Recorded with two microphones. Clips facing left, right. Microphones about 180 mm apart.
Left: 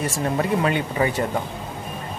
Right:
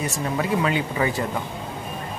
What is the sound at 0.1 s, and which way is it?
Speech, 30° left (ahead or behind).